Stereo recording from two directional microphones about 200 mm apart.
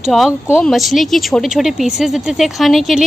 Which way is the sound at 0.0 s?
Centre (ahead or behind).